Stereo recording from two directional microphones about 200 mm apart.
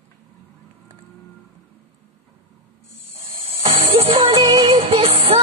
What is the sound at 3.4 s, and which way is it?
Music, 30° right (ahead or behind).